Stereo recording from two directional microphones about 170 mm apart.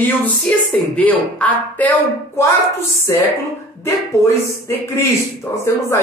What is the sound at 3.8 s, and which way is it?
Speech, 15° left (ahead or behind).